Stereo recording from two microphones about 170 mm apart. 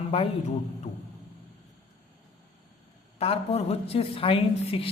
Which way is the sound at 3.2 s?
35° left (ahead or behind).